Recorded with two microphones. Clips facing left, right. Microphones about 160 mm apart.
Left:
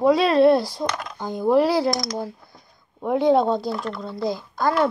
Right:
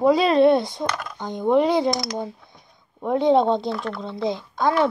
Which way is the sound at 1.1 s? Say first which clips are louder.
Left 1 dB; 5° left (ahead or behind).